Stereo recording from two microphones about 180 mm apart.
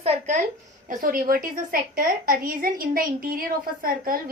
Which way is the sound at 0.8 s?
50° right (ahead or behind).